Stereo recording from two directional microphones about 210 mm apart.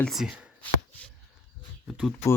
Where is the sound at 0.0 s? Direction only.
Centre (ahead or behind).